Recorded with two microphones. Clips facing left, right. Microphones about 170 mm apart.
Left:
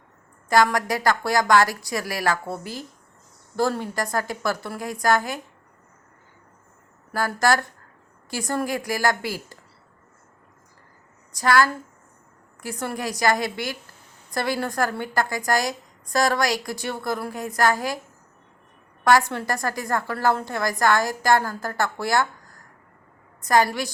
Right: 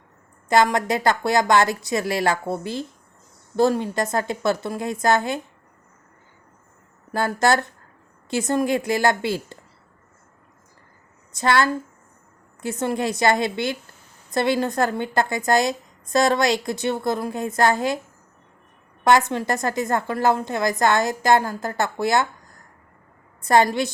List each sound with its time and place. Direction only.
0.4 s a woman's voice: 25° right (ahead or behind)
7.1 s a woman's voice: 25° right (ahead or behind)
11.3 s a woman's voice: 25° right (ahead or behind)
19.0 s a woman's voice: 20° right (ahead or behind)
23.4 s a woman's voice: 25° right (ahead or behind)